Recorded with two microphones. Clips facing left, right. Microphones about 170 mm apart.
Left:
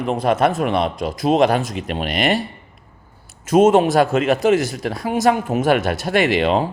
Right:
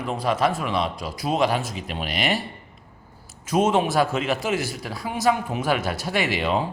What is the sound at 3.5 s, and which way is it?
A man's voice, 50° left (ahead or behind).